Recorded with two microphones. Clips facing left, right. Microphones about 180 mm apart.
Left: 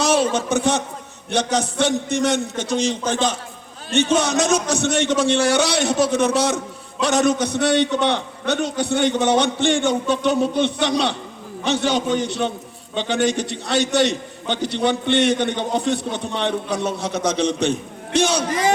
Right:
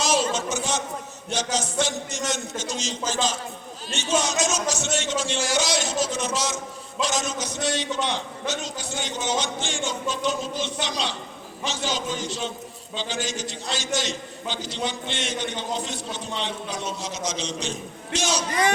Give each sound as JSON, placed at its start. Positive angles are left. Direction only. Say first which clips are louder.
{"t": 0.0, "sound": "a man's voice", "louder": "left 5 dB", "side_deg": 60}